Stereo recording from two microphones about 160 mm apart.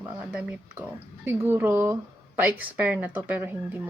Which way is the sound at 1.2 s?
15° right (ahead or behind).